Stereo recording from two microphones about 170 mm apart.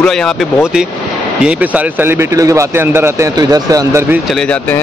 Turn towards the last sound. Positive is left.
turn(degrees=5)  # may be behind; listen again after turning